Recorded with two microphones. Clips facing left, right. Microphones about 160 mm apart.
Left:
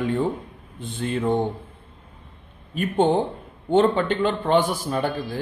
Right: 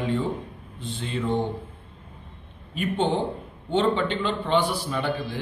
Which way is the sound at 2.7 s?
45° left (ahead or behind).